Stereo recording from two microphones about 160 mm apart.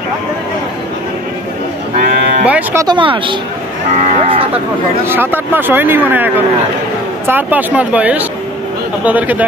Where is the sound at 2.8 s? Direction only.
30° right (ahead or behind).